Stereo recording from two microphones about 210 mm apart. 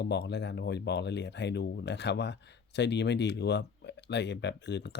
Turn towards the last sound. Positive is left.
turn(degrees=55)  # may be behind; listen again after turning